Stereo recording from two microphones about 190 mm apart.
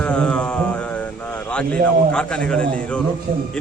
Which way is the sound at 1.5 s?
5° left (ahead or behind).